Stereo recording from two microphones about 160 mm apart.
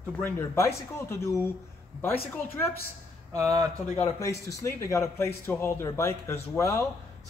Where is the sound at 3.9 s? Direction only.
20° left (ahead or behind).